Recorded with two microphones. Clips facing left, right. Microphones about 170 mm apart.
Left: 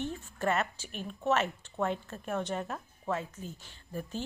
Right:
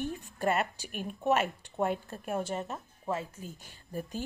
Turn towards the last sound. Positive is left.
turn(degrees=-10)  # may be behind; listen again after turning